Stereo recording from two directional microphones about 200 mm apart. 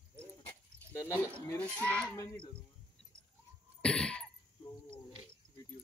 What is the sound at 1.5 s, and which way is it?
Speech, 10° left (ahead or behind).